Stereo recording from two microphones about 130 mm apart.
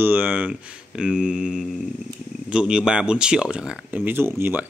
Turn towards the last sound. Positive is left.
turn(degrees=-20)  # may be behind; listen again after turning